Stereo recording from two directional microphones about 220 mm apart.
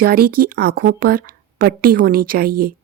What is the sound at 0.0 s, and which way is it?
A woman's voice, 40° right (ahead or behind).